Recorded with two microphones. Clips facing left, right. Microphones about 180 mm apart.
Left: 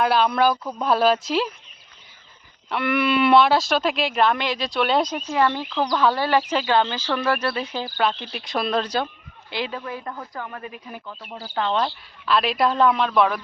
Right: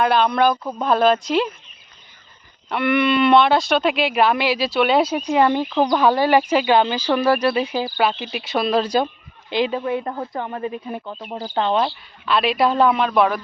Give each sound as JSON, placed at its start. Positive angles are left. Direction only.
{"t": 0.0, "sound": "speech", "side_deg": 5}
{"t": 0.5, "sound": "speech", "side_deg": -20}
{"t": 0.8, "sound": "speech", "side_deg": 5}
{"t": 2.6, "sound": "speech", "side_deg": 0}
{"t": 11.3, "sound": "speech", "side_deg": -25}
{"t": 11.7, "sound": "speech", "side_deg": -10}
{"t": 12.2, "sound": "speech", "side_deg": 0}